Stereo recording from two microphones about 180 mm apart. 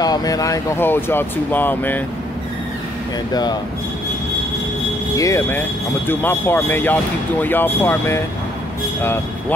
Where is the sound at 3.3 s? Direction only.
25° left (ahead or behind).